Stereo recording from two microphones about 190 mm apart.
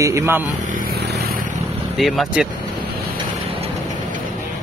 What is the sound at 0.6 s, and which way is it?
Vehicle, 45° right (ahead or behind).